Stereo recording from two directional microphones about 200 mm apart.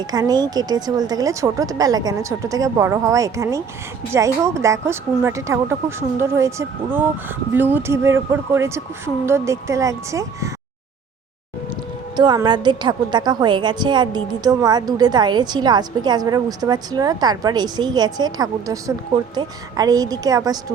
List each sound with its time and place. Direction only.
0.1 s a woman's voice: 20° right (ahead or behind)
12.1 s a woman's voice: 20° right (ahead or behind)